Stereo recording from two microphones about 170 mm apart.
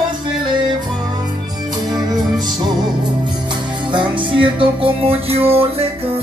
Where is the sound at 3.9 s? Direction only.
30° right (ahead or behind).